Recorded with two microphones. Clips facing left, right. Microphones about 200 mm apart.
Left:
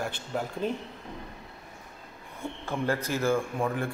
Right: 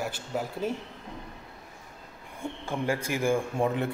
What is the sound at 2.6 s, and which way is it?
A man's voice, 15° right (ahead or behind).